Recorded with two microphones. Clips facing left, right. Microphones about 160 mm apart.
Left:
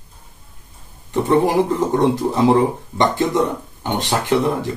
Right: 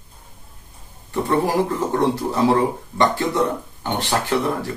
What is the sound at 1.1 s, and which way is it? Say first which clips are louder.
Speech: left 4 dB; 20° left (ahead or behind).